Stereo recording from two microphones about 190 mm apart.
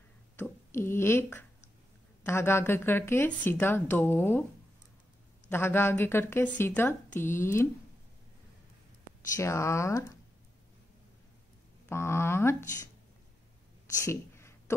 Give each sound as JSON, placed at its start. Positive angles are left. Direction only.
{"t": 0.4, "sound": "speech", "side_deg": 15}
{"t": 5.5, "sound": "speech", "side_deg": 10}
{"t": 9.4, "sound": "speech", "side_deg": 15}
{"t": 11.9, "sound": "speech", "side_deg": 15}
{"t": 14.0, "sound": "a sound", "side_deg": 15}